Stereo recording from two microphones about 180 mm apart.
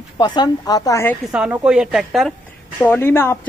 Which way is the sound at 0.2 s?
20° left (ahead or behind).